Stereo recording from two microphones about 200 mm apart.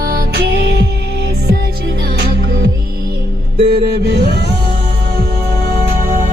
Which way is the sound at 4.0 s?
55° right (ahead or behind).